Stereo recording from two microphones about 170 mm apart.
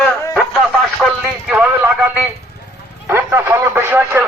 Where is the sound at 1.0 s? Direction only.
5° right (ahead or behind).